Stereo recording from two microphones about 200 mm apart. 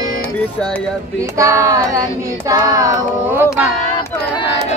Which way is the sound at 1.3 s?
15° right (ahead or behind).